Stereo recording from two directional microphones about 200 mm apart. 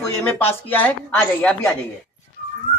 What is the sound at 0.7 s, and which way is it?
Speech, 10° left (ahead or behind).